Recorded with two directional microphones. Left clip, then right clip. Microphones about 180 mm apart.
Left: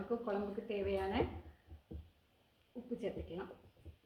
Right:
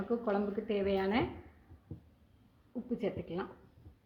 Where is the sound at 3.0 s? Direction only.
20° right (ahead or behind).